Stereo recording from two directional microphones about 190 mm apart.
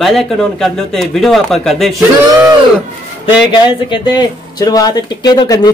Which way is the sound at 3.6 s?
25° left (ahead or behind).